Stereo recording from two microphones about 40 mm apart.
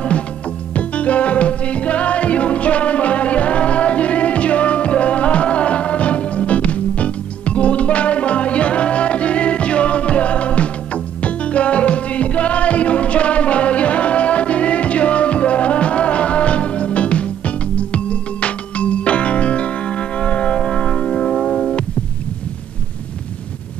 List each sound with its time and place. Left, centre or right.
0.7 s music: left
21.4 s music: centre